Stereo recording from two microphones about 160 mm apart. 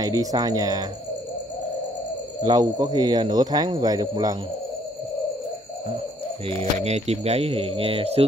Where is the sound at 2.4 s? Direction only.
25° right (ahead or behind).